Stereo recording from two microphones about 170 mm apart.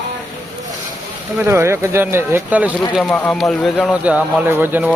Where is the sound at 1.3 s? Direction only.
15° right (ahead or behind).